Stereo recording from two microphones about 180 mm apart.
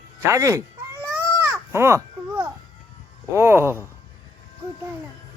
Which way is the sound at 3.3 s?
15° right (ahead or behind).